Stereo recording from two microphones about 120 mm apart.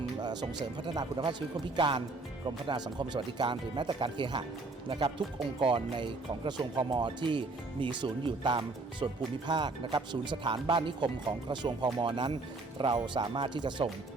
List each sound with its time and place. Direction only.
0.2 s music: 35° right (ahead or behind)
0.9 s speech: 40° right (ahead or behind)